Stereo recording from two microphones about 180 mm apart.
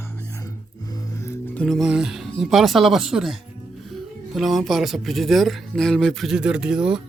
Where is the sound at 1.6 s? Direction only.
Centre (ahead or behind).